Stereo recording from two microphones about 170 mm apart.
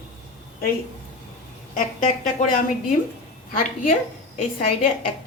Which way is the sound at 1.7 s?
50° left (ahead or behind).